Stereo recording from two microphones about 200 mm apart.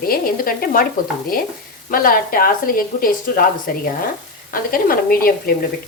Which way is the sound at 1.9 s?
45° left (ahead or behind).